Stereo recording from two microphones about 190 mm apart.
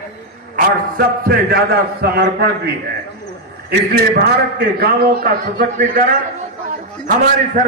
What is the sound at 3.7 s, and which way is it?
A man's voice, 55° right (ahead or behind).